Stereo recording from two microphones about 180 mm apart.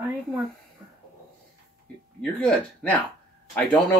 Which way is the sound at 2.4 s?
5° left (ahead or behind).